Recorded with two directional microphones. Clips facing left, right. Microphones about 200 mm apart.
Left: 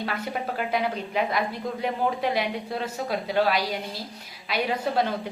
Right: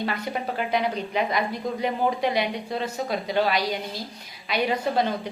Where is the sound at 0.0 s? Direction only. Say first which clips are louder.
Right 2 dB; 5° left (ahead or behind).